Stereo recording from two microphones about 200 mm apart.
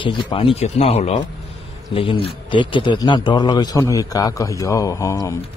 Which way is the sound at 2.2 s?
25° left (ahead or behind).